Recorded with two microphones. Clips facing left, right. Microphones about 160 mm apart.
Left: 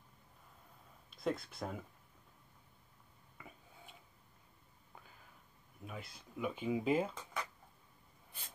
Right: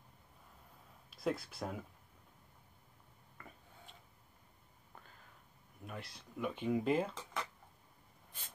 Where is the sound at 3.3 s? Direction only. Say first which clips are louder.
Even; 5° left (ahead or behind).